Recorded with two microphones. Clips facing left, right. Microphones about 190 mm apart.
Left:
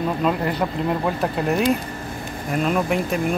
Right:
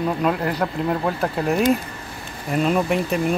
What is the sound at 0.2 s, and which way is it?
Speech, 5° right (ahead or behind).